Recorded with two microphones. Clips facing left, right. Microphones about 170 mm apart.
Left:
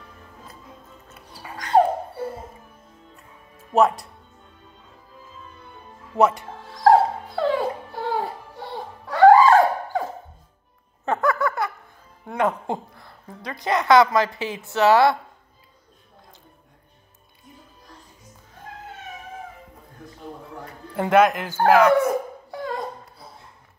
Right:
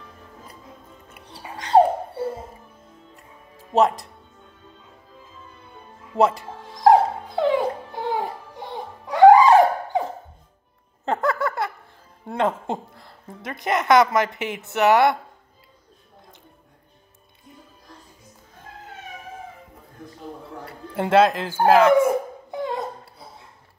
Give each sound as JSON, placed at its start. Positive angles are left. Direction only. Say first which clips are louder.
{"t": 1.3, "sound": "music", "louder": "right 2 dB", "side_deg": -25}
{"t": 6.1, "sound": "speech", "louder": "even", "side_deg": -30}
{"t": 6.6, "sound": "dog", "louder": "right 1 dB", "side_deg": -15}
{"t": 11.1, "sound": "laughter", "louder": "left 1 dB", "side_deg": -25}
{"t": 12.3, "sound": "a woman's voice", "louder": "even", "side_deg": -25}
{"t": 20.9, "sound": "a woman's voice", "louder": "even", "side_deg": -25}
{"t": 22.0, "sound": "dog", "louder": "right 2 dB", "side_deg": -20}